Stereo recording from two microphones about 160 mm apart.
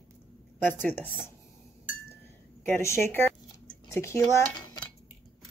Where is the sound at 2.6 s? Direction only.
15° left (ahead or behind).